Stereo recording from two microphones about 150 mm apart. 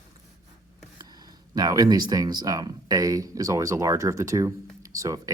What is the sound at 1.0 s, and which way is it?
Speech, 25° right (ahead or behind).